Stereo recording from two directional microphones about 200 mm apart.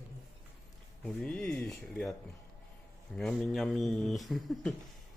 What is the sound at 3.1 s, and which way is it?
Speech, centre (ahead or behind).